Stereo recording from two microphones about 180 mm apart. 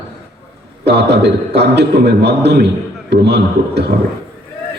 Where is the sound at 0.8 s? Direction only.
70° right (ahead or behind).